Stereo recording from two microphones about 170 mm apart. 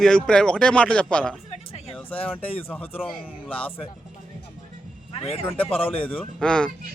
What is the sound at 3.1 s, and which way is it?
Speech, 30° left (ahead or behind).